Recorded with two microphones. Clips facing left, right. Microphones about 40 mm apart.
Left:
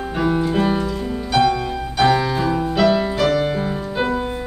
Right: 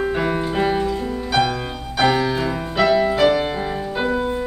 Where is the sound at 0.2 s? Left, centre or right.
Centre.